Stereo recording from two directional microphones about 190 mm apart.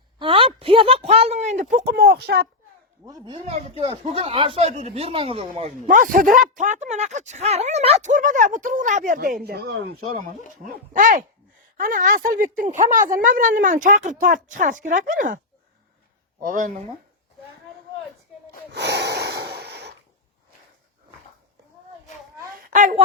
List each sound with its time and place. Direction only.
0.2 s a sound: 30° right (ahead or behind); by 2.5 s 55° right (ahead or behind)
3.1 s speech: 20° right (ahead or behind); by 9.7 s 55° right (ahead or behind)
10.7 s a woman's voice: 45° right (ahead or behind)
16.4 s a woman's voice: 45° right (ahead or behind)
18.7 s snort: 60° right (ahead or behind)
22.7 s a woman's voice: 40° right (ahead or behind)